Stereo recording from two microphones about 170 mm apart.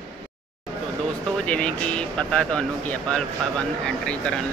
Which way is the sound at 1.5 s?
5° left (ahead or behind).